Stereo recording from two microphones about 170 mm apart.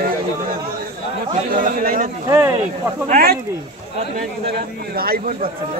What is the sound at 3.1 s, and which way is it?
Speech, 65° right (ahead or behind).